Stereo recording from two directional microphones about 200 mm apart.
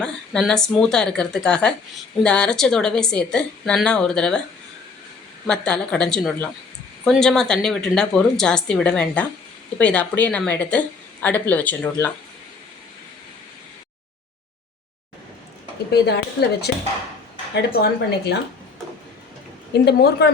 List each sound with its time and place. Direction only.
0.0 s a woman's voice: 5° left (ahead or behind)
5.5 s a woman's voice: 5° left (ahead or behind)
15.9 s speech: 55° left (ahead or behind)
19.8 s speech: 55° left (ahead or behind)